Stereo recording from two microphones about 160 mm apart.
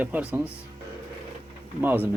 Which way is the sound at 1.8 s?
10° right (ahead or behind).